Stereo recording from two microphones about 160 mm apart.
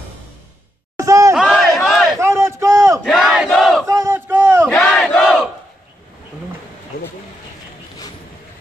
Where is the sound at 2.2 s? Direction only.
15° right (ahead or behind).